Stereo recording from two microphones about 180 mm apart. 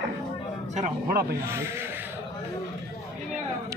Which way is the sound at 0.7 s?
45° right (ahead or behind).